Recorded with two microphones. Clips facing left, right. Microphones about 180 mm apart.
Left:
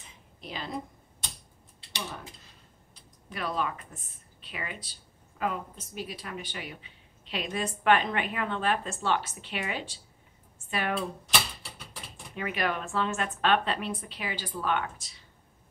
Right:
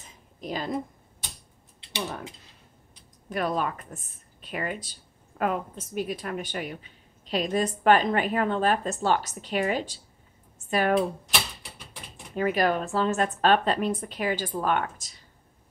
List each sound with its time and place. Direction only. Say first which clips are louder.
0.0 s a sound: right 7 dB; 45° right (ahead or behind)
3.3 s a woman's voice: right 5 dB; 45° right (ahead or behind)
12.4 s speech: right 7 dB; 40° right (ahead or behind)